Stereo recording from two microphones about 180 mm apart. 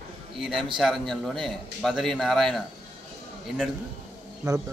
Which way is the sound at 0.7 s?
Centre (ahead or behind).